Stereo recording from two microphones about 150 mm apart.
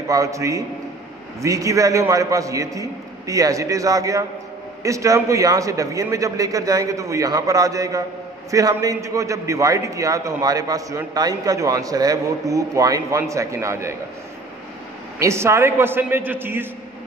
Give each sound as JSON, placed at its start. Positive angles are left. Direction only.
{"t": 0.1, "sound": "a man's voice", "side_deg": -20}
{"t": 15.1, "sound": "a man's voice", "side_deg": -20}